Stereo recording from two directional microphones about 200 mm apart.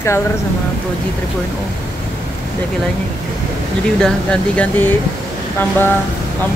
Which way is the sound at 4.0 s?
5° left (ahead or behind).